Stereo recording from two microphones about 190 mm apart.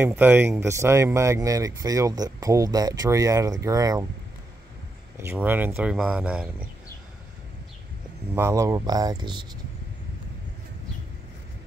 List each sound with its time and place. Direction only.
0.0 s speech: 10° right (ahead or behind)
5.2 s speech: 10° right (ahead or behind)
8.4 s speech: 15° right (ahead or behind)